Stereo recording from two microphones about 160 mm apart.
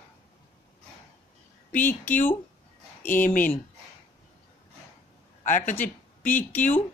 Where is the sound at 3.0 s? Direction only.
10° left (ahead or behind).